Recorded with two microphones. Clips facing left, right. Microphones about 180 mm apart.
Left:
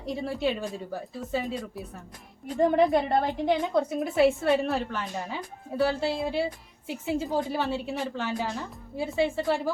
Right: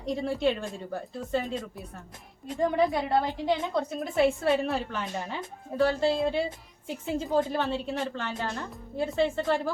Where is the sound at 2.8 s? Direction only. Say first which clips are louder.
Left 2 dB; 20° left (ahead or behind).